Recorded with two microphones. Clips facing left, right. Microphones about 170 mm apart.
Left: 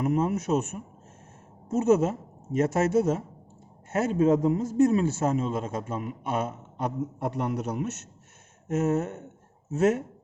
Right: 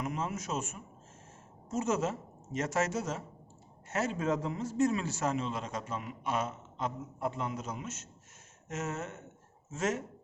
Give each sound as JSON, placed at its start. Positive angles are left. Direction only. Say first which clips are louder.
{"t": 0.0, "sound": "a man's voice", "louder": "left 10 dB", "side_deg": 55}
{"t": 8.6, "sound": "speech", "louder": "left 12 dB", "side_deg": 55}